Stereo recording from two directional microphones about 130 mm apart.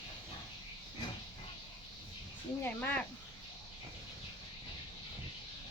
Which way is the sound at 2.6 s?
15° left (ahead or behind).